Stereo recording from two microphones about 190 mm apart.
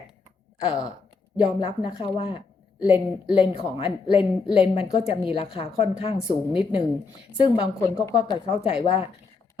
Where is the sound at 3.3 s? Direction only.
30° left (ahead or behind).